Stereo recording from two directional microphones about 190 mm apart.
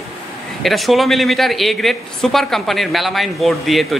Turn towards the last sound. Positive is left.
turn(degrees=0)  # may be behind; listen again after turning